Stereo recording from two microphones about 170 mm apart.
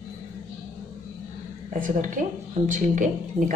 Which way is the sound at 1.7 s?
50° right (ahead or behind).